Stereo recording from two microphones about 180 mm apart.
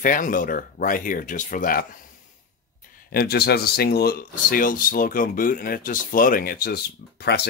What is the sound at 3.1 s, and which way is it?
Speech, 60° left (ahead or behind).